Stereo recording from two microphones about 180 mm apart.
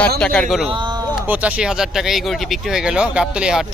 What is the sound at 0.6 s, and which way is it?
Speech, 25° right (ahead or behind).